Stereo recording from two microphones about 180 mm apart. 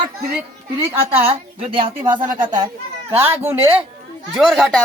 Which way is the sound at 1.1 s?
30° right (ahead or behind).